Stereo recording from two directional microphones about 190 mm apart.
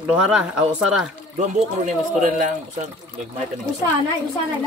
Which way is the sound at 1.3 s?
40° right (ahead or behind).